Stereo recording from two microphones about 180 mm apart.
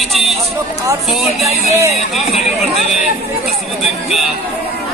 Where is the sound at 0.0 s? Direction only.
Centre (ahead or behind).